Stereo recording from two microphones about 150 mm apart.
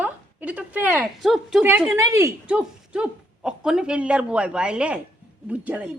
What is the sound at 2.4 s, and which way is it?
Speech, 10° right (ahead or behind).